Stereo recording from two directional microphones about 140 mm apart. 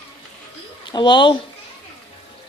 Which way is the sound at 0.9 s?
35° left (ahead or behind).